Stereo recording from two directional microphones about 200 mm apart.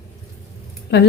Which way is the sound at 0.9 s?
55° left (ahead or behind).